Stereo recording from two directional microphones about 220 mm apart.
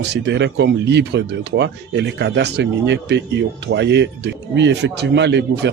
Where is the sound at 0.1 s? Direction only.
50° right (ahead or behind).